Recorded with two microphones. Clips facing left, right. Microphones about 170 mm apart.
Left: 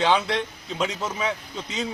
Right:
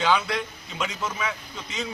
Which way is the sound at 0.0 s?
30° left (ahead or behind).